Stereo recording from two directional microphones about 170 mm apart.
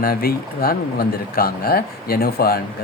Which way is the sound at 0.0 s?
60° left (ahead or behind).